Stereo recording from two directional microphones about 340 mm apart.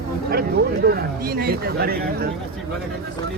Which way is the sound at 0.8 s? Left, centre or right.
Right.